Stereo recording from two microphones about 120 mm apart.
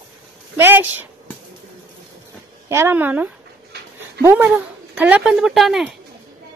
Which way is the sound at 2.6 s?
20° right (ahead or behind).